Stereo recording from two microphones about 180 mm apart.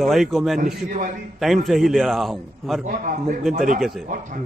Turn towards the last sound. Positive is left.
turn(degrees=-45)  # may be behind; listen again after turning